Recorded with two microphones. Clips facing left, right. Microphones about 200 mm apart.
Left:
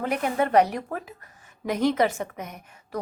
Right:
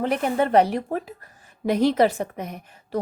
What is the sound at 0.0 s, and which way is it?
A woman's voice, 30° right (ahead or behind).